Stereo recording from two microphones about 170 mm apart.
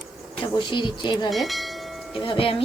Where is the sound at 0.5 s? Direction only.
30° left (ahead or behind).